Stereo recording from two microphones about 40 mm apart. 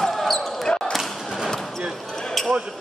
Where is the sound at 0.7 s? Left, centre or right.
Left.